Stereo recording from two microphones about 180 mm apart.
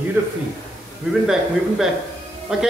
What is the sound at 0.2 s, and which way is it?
Speech, 10° right (ahead or behind).